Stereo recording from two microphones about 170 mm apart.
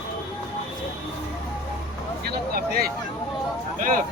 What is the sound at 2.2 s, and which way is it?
Vehicle, 60° right (ahead or behind).